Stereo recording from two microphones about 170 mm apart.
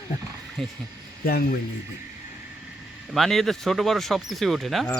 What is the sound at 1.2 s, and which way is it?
Speech, 65° left (ahead or behind).